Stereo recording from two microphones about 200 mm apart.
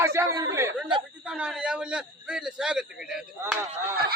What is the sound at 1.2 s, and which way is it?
A man's voice, 5° right (ahead or behind).